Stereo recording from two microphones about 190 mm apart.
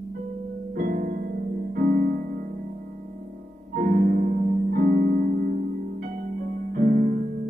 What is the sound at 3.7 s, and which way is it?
Music, 50° right (ahead or behind).